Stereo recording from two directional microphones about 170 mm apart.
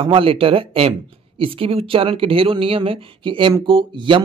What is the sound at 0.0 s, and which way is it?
Speech, 30° right (ahead or behind).